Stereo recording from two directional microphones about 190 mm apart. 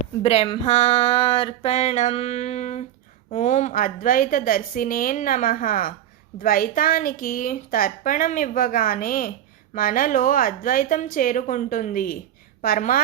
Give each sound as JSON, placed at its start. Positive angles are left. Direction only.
{"t": 0.0, "sound": "a woman's voice", "side_deg": 35}